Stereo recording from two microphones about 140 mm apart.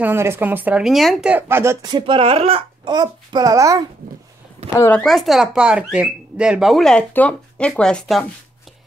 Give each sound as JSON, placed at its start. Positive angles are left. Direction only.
{"t": 0.0, "sound": "speech", "side_deg": -15}
{"t": 0.8, "sound": "speech", "side_deg": 0}
{"t": 1.3, "sound": "speech", "side_deg": -20}
{"t": 1.9, "sound": "a child's voice", "side_deg": -35}
{"t": 4.7, "sound": "speech", "side_deg": 15}
{"t": 5.0, "sound": "speech", "side_deg": 0}